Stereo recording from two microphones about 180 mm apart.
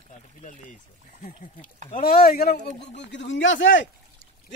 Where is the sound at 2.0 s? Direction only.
55° left (ahead or behind).